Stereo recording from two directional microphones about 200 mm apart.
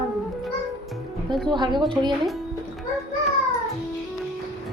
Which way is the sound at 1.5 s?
20° right (ahead or behind).